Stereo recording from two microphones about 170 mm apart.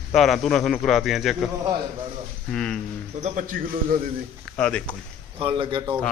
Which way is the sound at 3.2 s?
50° right (ahead or behind).